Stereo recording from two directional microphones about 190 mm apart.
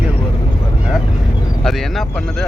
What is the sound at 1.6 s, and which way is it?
Speech, centre (ahead or behind).